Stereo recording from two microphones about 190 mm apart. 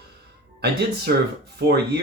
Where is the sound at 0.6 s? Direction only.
60° right (ahead or behind).